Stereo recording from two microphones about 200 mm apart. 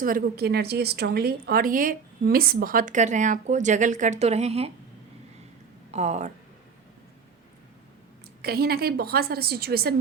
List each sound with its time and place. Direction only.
0.0 s a woman's voice: 45° right (ahead or behind)
5.9 s speech: 35° right (ahead or behind)
8.4 s a woman's voice: 50° right (ahead or behind)